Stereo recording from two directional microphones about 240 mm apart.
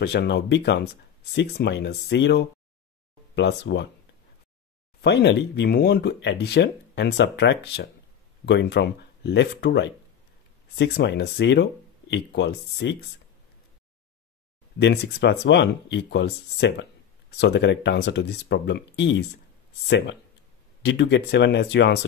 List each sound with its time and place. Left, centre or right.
0.0 s speech: left
5.0 s speech: left
14.8 s speech: left
20.8 s speech: left